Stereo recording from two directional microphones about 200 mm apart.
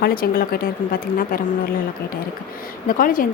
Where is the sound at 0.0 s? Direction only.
45° left (ahead or behind).